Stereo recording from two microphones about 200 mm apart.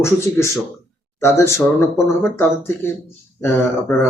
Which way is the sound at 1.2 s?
15° left (ahead or behind).